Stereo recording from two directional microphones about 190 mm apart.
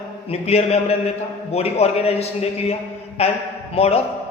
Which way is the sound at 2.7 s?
30° left (ahead or behind).